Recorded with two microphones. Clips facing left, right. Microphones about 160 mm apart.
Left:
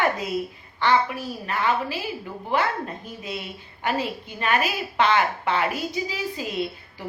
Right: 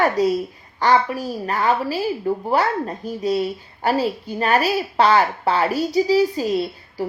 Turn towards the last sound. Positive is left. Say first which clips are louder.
# right 6 dB
turn(degrees=-35)  # may be behind; listen again after turning